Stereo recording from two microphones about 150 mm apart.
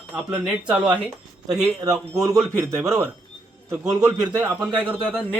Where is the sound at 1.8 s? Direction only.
20° right (ahead or behind).